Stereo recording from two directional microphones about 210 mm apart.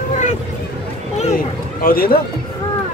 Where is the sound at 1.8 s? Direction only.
45° left (ahead or behind).